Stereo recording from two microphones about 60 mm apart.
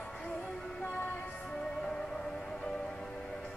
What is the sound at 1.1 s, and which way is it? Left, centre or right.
Music, centre.